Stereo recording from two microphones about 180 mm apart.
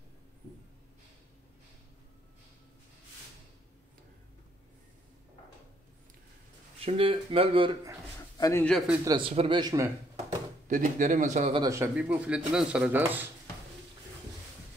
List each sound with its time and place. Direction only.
6.8 s speech: 30° right (ahead or behind)
8.4 s a man's voice: 15° left (ahead or behind)
8.6 s a man's voice: centre (ahead or behind)
9.0 s speech: 30° right (ahead or behind)
10.7 s a man's voice: 45° right (ahead or behind)
11.5 s speech: 20° right (ahead or behind)
11.9 s speech: 5° right (ahead or behind)